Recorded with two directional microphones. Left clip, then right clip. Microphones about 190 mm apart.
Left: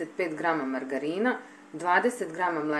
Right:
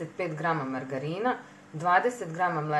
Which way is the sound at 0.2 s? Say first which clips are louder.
Left 1 dB; 25° left (ahead or behind).